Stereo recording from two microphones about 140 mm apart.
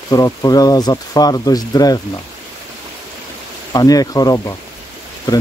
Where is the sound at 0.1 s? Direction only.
25° left (ahead or behind).